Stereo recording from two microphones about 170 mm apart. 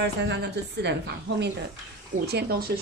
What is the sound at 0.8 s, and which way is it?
Speech, 90° right.